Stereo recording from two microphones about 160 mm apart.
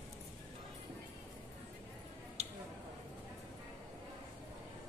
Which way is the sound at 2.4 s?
40° right (ahead or behind).